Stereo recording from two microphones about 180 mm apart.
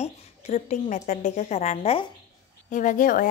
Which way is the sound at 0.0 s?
40° left (ahead or behind).